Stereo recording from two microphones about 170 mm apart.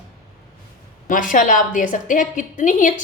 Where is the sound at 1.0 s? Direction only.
50° left (ahead or behind).